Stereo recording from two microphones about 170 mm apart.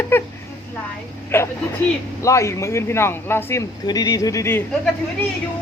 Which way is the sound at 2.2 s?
15° left (ahead or behind).